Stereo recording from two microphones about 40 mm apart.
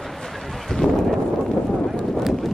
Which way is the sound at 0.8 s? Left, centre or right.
Right.